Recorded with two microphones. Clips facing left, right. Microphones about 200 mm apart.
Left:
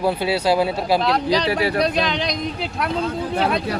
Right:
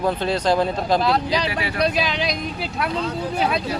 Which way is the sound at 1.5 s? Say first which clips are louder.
Left 6 dB; 40° left (ahead or behind).